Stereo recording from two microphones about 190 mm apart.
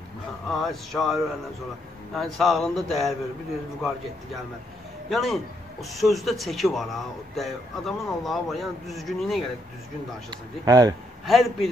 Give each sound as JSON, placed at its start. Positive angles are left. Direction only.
{"t": 0.5, "sound": "a man's voice", "side_deg": 0}
{"t": 5.1, "sound": "a man's voice", "side_deg": 0}
{"t": 10.3, "sound": "speech", "side_deg": -20}
{"t": 11.2, "sound": "a man's voice", "side_deg": 0}